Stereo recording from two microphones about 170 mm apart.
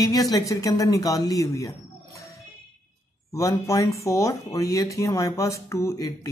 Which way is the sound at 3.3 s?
20° left (ahead or behind).